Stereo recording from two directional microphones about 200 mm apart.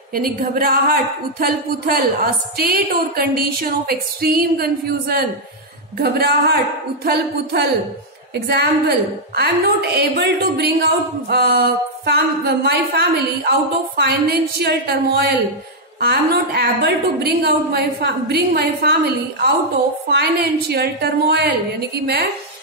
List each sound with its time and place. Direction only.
0.1 s a woman's voice: 45° right (ahead or behind)
8.5 s a woman's voice: 55° right (ahead or behind)